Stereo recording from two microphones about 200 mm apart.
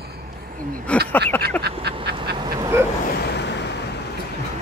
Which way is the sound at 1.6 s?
55° right (ahead or behind).